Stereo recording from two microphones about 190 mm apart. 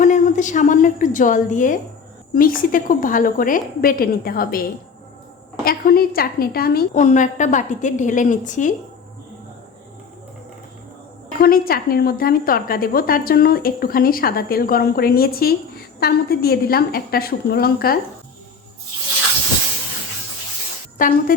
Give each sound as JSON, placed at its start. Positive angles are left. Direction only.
{"t": 0.0, "sound": "a woman's voice", "side_deg": 40}
{"t": 5.6, "sound": "a woman's voice", "side_deg": 50}
{"t": 11.3, "sound": "a woman's voice", "side_deg": 50}
{"t": 21.0, "sound": "speech", "side_deg": 45}